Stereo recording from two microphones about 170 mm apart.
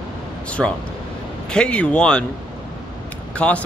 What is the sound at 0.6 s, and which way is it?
Speech, 5° right (ahead or behind).